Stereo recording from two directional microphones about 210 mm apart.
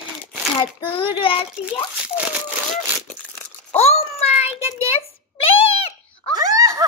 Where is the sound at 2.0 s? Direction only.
5° right (ahead or behind).